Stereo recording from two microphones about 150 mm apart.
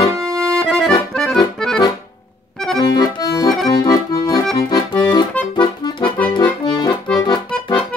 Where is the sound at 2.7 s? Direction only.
25° left (ahead or behind).